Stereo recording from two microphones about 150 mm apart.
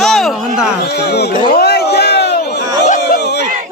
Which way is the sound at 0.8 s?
90° left.